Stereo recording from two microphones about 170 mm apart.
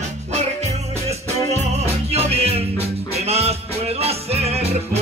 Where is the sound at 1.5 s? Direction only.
40° right (ahead or behind).